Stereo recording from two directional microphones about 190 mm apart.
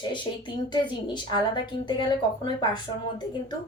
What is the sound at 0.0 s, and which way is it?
Speech, 25° left (ahead or behind).